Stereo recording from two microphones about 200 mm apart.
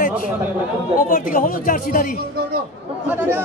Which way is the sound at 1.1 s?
45° left (ahead or behind).